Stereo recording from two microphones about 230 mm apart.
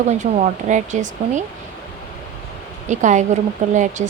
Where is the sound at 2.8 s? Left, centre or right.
Right.